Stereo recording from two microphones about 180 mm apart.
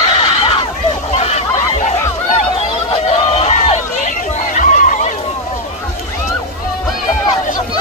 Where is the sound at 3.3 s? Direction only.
35° left (ahead or behind).